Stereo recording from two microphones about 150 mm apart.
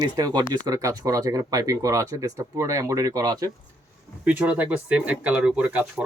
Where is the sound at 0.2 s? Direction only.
25° right (ahead or behind).